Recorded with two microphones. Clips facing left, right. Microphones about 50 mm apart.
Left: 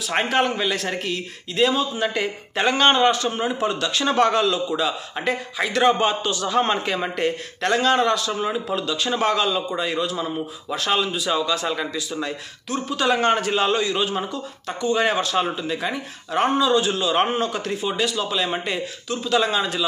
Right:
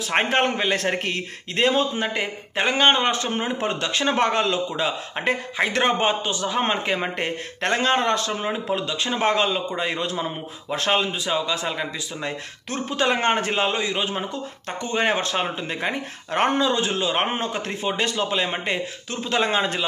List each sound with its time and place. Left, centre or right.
0.0 s a man's voice: right
2.1 s a man's voice: right
11.2 s speech: right
12.6 s a man's voice: right